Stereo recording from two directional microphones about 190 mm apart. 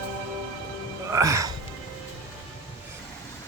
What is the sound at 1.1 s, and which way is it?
Music, 15° right (ahead or behind).